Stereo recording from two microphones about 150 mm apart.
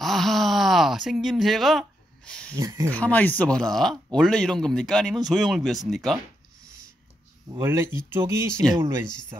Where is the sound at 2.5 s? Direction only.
20° right (ahead or behind).